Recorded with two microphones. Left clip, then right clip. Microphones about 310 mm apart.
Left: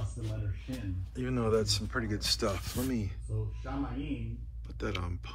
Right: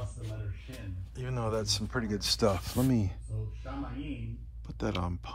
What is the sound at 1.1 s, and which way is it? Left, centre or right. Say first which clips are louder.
Speech: left 4 dB; centre.